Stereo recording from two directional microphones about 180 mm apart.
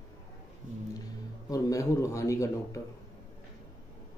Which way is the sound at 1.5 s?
20° left (ahead or behind).